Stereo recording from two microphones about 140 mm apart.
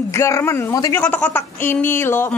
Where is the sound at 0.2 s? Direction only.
20° left (ahead or behind).